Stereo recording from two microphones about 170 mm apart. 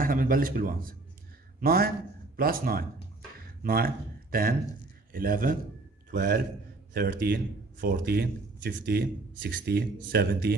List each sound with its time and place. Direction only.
0.0 s a man's voice: 55° right (ahead or behind)
6.1 s speech: 70° right (ahead or behind)